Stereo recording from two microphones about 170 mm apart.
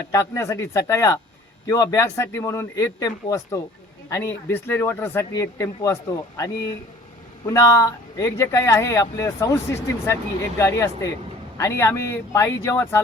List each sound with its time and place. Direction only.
0.1 s speech: 15° left (ahead or behind)